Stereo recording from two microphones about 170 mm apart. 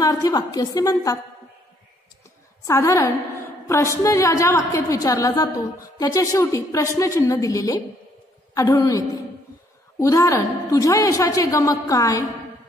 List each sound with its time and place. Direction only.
0.0 s a woman's voice: 20° left (ahead or behind)
2.6 s a woman's voice: 20° left (ahead or behind)